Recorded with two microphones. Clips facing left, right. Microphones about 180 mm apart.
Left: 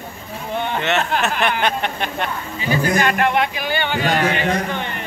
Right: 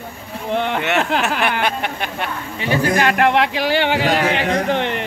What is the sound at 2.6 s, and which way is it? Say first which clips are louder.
Speech: right 1 dB; 70° right (ahead or behind).